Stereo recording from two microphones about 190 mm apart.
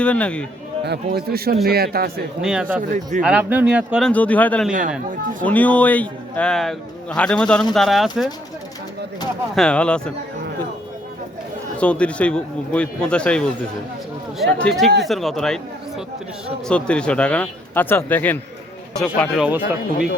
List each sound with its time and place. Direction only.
0.0 s a man's voice: 5° left (ahead or behind)
0.9 s a man's voice: 55° right (ahead or behind)
2.4 s a man's voice: 5° right (ahead or behind)
2.9 s speech: 40° right (ahead or behind)
3.2 s speech: 5° right (ahead or behind)
4.1 s a man's voice: 10° left (ahead or behind)
9.6 s a man's voice: 5° left (ahead or behind)
11.8 s a man's voice: 5° left (ahead or behind)